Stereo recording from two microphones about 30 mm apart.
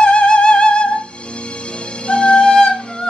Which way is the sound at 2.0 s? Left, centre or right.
Left.